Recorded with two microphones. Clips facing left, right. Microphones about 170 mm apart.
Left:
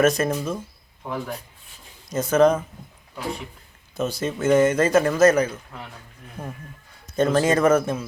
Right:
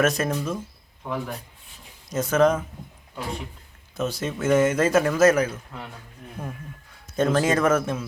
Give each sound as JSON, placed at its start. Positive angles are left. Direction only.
{"t": 0.0, "sound": "speech", "side_deg": 0}
{"t": 2.0, "sound": "speech", "side_deg": 0}
{"t": 3.9, "sound": "speech", "side_deg": 0}
{"t": 6.4, "sound": "speech", "side_deg": 15}
{"t": 7.2, "sound": "speech", "side_deg": 0}